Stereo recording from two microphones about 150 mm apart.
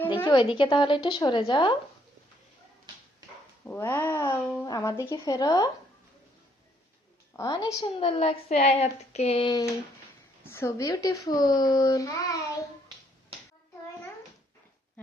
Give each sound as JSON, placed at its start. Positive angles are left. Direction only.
{"t": 0.2, "sound": "speech", "side_deg": 30}
{"t": 3.6, "sound": "speech", "side_deg": 15}
{"t": 7.3, "sound": "speech", "side_deg": 20}
{"t": 7.9, "sound": "speech", "side_deg": 40}
{"t": 10.4, "sound": "speech", "side_deg": 15}